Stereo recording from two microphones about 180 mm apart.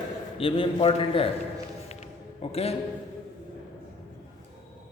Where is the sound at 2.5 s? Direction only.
35° left (ahead or behind).